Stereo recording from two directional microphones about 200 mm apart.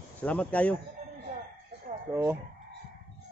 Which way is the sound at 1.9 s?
40° right (ahead or behind).